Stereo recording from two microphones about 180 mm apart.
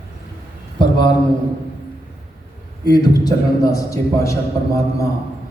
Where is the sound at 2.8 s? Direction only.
20° left (ahead or behind).